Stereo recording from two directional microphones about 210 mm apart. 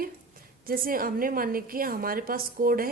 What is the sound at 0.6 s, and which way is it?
A woman's voice, 45° right (ahead or behind).